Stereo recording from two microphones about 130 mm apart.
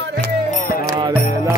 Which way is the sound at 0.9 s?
35° right (ahead or behind).